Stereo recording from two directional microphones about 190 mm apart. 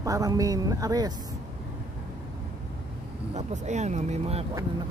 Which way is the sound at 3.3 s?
40° right (ahead or behind).